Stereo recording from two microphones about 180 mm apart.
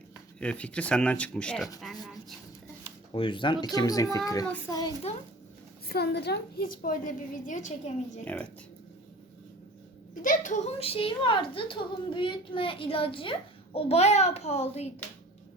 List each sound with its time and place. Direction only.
0.3 s speech: 5° left (ahead or behind)
3.1 s a woman's voice: 30° left (ahead or behind)
5.9 s a woman's voice: 65° left (ahead or behind); by 8.2 s 40° left (ahead or behind)
8.2 s speech: 10° left (ahead or behind)
10.2 s a woman's voice: 45° left (ahead or behind)